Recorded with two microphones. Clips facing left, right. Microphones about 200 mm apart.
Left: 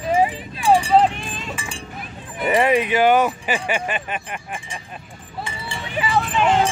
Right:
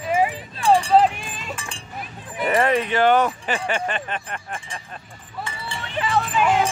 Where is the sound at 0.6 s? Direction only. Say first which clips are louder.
Left 1 dB; 5° left (ahead or behind).